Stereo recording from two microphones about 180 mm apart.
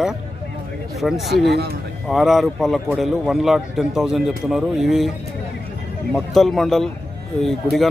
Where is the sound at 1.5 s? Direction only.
60° right (ahead or behind).